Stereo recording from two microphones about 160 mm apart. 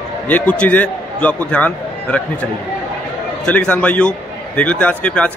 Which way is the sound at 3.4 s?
5° left (ahead or behind).